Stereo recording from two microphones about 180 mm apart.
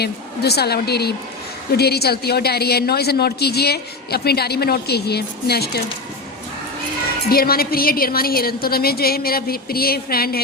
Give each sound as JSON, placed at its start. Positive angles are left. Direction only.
{"t": 0.0, "sound": "a woman's voice", "side_deg": 65}
{"t": 7.3, "sound": "a woman's voice", "side_deg": 55}